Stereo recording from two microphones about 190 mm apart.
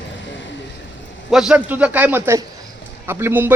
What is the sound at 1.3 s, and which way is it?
A man's voice, 5° right (ahead or behind).